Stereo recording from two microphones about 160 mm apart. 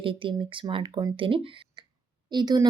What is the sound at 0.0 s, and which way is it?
Speech, 35° right (ahead or behind).